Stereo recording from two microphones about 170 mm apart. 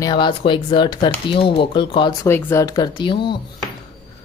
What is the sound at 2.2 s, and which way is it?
Speech, 15° left (ahead or behind).